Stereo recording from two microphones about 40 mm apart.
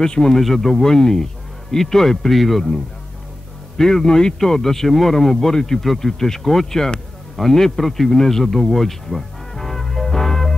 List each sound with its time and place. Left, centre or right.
0.0 s speech: centre
0.4 s speech: centre
8.6 s music: centre